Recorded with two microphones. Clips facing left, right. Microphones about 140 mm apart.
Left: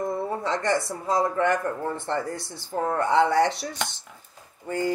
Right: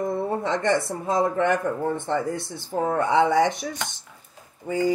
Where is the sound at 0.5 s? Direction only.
25° right (ahead or behind).